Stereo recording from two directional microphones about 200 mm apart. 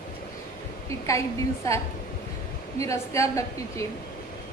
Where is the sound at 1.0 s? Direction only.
15° left (ahead or behind).